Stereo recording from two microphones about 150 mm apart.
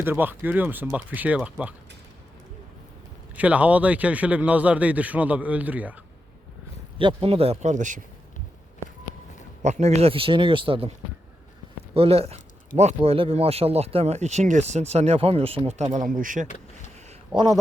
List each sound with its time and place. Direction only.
0.0 s a man's voice: 15° right (ahead or behind)
3.3 s a man's voice: 10° right (ahead or behind)
7.0 s speech: 35° right (ahead or behind); by 8.0 s 55° right (ahead or behind)
9.6 s speech: 50° right (ahead or behind)
11.9 s speech: 40° right (ahead or behind)
16.0 s speech: 65° right (ahead or behind)
17.3 s speech: 30° right (ahead or behind)